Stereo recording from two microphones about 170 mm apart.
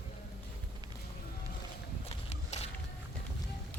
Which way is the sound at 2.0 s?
40° left (ahead or behind).